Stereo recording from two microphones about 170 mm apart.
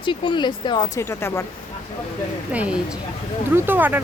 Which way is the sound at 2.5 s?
10° right (ahead or behind).